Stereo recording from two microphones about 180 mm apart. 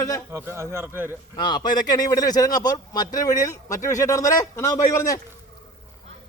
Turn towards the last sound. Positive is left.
turn(degrees=15)  # may be behind; listen again after turning